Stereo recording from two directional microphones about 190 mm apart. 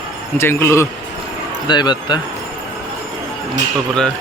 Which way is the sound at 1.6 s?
25° left (ahead or behind).